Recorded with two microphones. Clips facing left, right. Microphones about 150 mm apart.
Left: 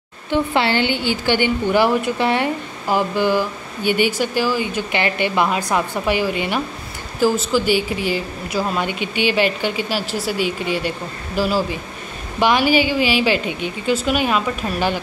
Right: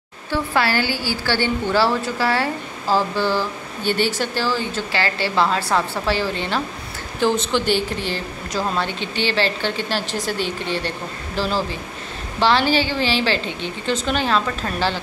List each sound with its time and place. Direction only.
0.3 s a woman's voice: 20° left (ahead or behind)